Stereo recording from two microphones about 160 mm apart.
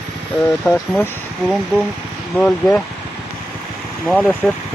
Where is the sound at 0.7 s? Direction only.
20° left (ahead or behind).